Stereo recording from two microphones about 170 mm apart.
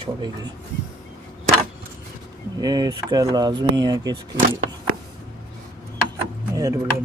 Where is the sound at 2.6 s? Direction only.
25° right (ahead or behind).